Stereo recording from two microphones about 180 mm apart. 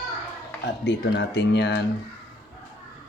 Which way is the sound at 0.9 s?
80° left.